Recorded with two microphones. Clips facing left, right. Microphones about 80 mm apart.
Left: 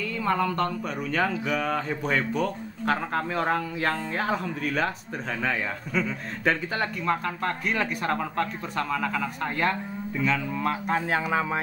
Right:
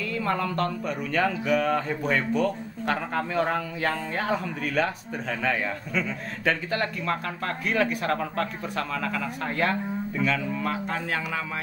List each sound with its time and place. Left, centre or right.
0.2 s speech: centre
11.1 s speech: left